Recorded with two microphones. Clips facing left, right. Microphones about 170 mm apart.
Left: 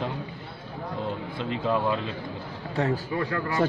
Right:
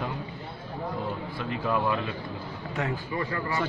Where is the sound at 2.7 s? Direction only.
35° left (ahead or behind).